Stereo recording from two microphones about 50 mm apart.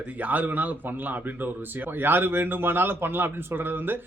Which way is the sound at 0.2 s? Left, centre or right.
Right.